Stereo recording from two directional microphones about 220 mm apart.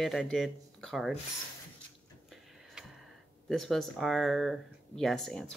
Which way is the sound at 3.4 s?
Centre (ahead or behind).